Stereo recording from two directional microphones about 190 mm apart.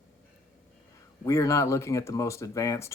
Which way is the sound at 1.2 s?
15° left (ahead or behind).